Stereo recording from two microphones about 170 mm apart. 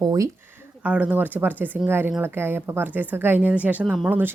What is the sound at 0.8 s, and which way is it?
Speech, 10° right (ahead or behind).